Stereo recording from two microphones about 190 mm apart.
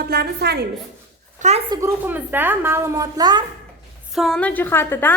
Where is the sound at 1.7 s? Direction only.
15° right (ahead or behind).